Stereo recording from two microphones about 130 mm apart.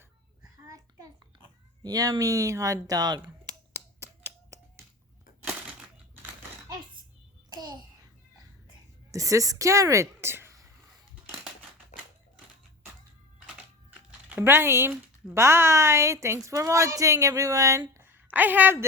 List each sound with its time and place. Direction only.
0.7 s child singing: 25° right (ahead or behind)
1.8 s a woman's voice: 30° right (ahead or behind)
2.8 s a sound: 30° right (ahead or behind)
7.5 s babbling: 35° right (ahead or behind)
9.1 s speech: 25° right (ahead or behind)
14.3 s a woman's voice: 15° right (ahead or behind)